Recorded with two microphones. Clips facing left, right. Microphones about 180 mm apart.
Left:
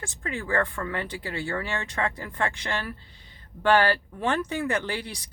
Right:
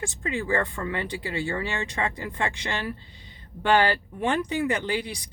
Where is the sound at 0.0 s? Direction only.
15° right (ahead or behind).